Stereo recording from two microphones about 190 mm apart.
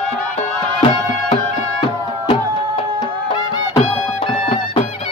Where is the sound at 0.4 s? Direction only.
30° left (ahead or behind).